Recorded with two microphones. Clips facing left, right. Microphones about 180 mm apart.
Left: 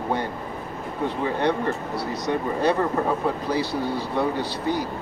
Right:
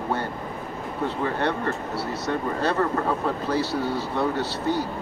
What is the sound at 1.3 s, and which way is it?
Speech, 15° left (ahead or behind).